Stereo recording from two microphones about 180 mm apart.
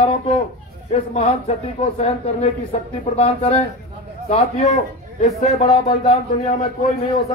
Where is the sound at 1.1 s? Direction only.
35° left (ahead or behind).